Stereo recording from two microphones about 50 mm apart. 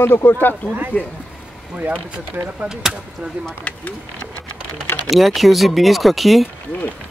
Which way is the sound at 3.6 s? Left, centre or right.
Left.